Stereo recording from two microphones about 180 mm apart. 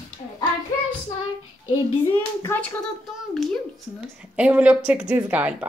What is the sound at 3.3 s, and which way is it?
A woman's voice, centre (ahead or behind).